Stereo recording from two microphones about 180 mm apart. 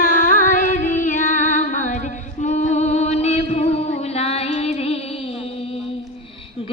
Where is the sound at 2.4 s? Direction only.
40° left (ahead or behind).